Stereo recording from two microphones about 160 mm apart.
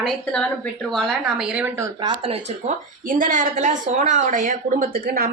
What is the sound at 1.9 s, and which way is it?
Speech, 30° right (ahead or behind).